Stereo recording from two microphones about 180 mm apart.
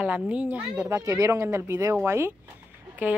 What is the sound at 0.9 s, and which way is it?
Speech, 20° right (ahead or behind).